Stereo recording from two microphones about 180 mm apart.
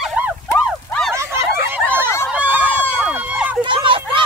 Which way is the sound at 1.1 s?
15° right (ahead or behind).